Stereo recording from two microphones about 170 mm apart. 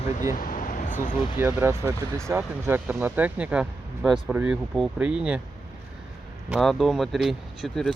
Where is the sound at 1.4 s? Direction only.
15° right (ahead or behind).